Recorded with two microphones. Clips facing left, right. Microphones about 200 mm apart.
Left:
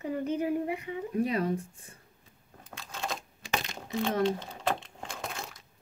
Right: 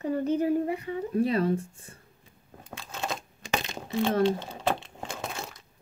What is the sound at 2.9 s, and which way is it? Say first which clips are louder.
Computer keyboard: right 2 dB; centre (ahead or behind).